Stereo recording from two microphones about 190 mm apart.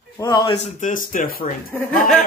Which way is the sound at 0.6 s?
40° left (ahead or behind).